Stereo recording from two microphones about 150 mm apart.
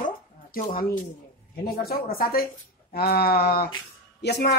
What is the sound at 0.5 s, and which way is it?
Speech, 75° left (ahead or behind).